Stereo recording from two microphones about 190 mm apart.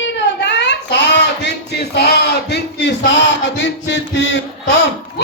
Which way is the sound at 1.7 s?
60° left (ahead or behind).